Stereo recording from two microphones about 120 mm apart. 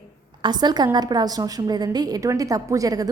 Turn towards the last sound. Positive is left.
turn(degrees=-30)  # may be behind; listen again after turning